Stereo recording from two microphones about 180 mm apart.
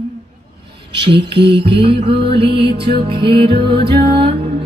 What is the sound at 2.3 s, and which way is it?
Music, 30° right (ahead or behind).